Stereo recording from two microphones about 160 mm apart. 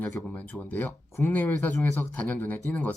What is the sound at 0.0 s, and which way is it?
Speech, 10° left (ahead or behind).